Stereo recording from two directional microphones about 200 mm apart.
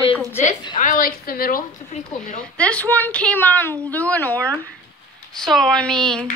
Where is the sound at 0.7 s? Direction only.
45° left (ahead or behind).